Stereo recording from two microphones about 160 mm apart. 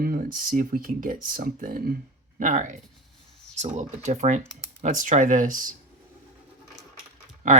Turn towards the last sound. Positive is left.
turn(degrees=-55)  # may be behind; listen again after turning